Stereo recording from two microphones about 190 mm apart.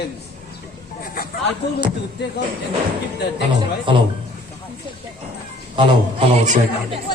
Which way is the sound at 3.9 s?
25° right (ahead or behind).